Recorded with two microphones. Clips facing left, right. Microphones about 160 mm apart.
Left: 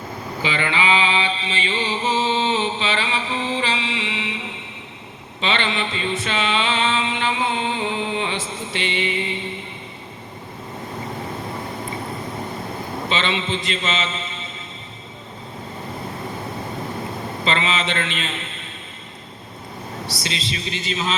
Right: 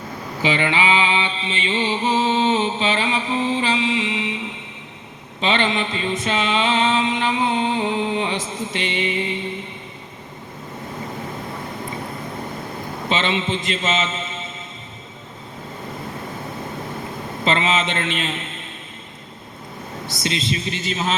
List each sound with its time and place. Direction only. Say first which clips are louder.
1.4 s mantra: right 2 dB; 35° left (ahead or behind)
2.1 s a sound: right 3 dB; 45° right (ahead or behind)
5.4 s mantra: right 3 dB; 45° right (ahead or behind)
13.1 s a man's voice: right 2 dB; 50° right (ahead or behind)
17.4 s a man's voice: right 3 dB; 50° right (ahead or behind)
20.1 s a man's voice: right 7 dB; 50° right (ahead or behind)